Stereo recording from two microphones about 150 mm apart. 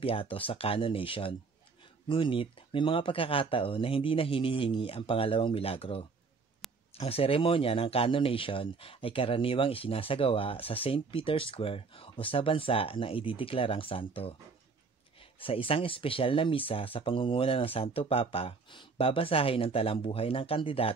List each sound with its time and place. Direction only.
0.0 s speech: 35° left (ahead or behind)
15.3 s speech: 35° left (ahead or behind)